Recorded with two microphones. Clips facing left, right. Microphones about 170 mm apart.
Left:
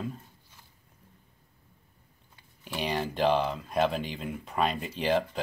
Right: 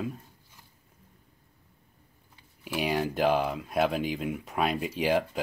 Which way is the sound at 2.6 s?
5° right (ahead or behind).